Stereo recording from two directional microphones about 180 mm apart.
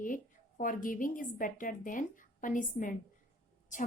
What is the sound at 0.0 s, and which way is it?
A woman's voice, 50° left (ahead or behind).